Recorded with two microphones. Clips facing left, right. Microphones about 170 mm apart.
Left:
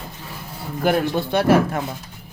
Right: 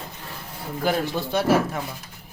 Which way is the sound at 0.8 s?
60° left (ahead or behind).